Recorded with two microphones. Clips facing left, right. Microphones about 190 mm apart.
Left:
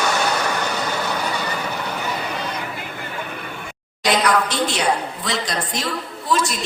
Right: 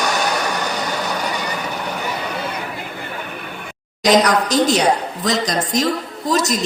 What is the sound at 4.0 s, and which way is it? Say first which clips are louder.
A woman's voice: right 4 dB; 40° right (ahead or behind).